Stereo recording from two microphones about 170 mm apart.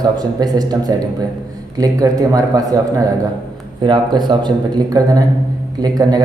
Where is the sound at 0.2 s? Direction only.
25° right (ahead or behind).